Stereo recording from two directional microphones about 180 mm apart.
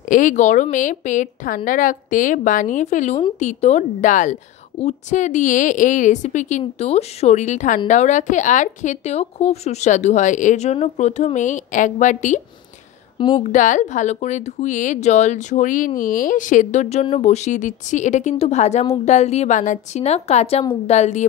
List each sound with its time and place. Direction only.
0.0 s a woman's voice: 45° left (ahead or behind)
13.4 s a woman's voice: 45° left (ahead or behind)